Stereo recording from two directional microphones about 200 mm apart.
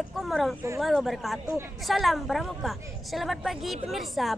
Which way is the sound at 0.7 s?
Centre (ahead or behind).